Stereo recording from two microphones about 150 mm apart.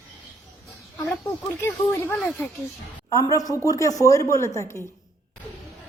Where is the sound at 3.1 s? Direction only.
20° left (ahead or behind).